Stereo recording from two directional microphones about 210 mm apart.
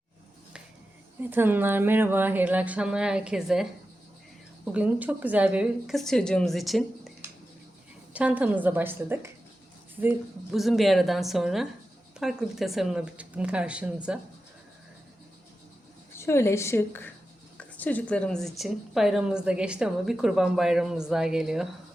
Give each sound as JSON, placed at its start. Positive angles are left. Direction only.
{"t": 1.3, "sound": "a woman's voice", "side_deg": -10}
{"t": 8.1, "sound": "a woman's voice", "side_deg": -5}
{"t": 16.1, "sound": "a woman's voice", "side_deg": 15}